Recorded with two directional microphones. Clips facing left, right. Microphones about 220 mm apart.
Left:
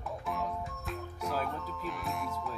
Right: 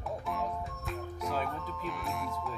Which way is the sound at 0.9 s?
Centre (ahead or behind).